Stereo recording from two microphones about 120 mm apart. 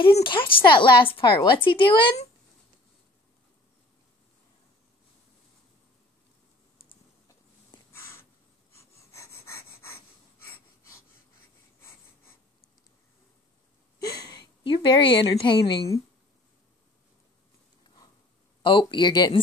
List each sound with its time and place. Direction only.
0.2 s speech: 45° left (ahead or behind)
7.9 s a sound: 20° left (ahead or behind)
8.7 s breathing: 25° left (ahead or behind)
13.9 s a woman's voice: 30° left (ahead or behind)
18.6 s speech: 45° left (ahead or behind)